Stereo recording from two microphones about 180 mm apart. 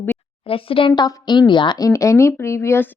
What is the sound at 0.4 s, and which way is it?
Speech, 30° left (ahead or behind).